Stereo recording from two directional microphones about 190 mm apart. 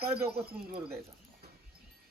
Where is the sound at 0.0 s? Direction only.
55° right (ahead or behind).